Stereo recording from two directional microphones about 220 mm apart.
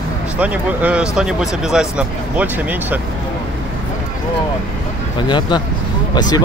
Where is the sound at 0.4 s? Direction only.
5° right (ahead or behind).